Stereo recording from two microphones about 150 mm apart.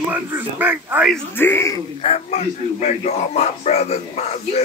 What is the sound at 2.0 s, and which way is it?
Speech, 45° left (ahead or behind).